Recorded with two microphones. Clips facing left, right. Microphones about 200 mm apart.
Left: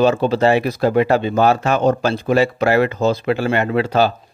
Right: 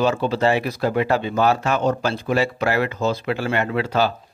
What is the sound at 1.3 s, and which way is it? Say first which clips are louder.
Speech: left 2 dB; 50° left (ahead or behind).